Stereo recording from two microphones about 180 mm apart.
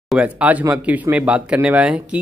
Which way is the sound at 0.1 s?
5° right (ahead or behind).